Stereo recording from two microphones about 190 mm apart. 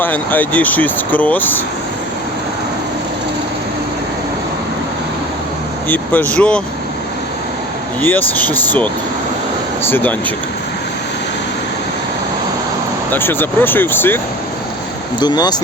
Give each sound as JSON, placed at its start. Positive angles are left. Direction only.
{"t": 0.0, "sound": "speech", "side_deg": 10}
{"t": 5.9, "sound": "speech", "side_deg": 10}
{"t": 8.0, "sound": "speech", "side_deg": 10}
{"t": 9.9, "sound": "speech", "side_deg": 10}
{"t": 13.1, "sound": "speech", "side_deg": 10}
{"t": 15.2, "sound": "speech", "side_deg": 20}